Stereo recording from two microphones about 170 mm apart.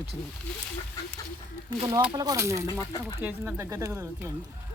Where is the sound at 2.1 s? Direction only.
20° right (ahead or behind).